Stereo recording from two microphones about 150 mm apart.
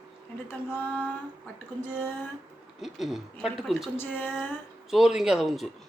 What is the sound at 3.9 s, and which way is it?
Speech, 15° left (ahead or behind).